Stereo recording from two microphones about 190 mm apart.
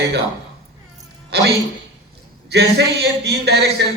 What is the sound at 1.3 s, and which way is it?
Speech, 60° right (ahead or behind).